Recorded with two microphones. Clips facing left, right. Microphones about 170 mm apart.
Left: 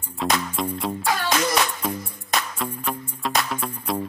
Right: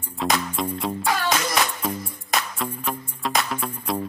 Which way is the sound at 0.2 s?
Centre (ahead or behind).